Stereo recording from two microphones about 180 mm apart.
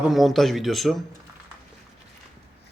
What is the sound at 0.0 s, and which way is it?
A man's voice, centre (ahead or behind).